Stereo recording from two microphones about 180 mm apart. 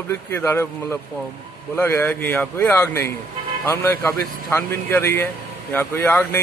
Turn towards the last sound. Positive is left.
turn(degrees=10)  # may be behind; listen again after turning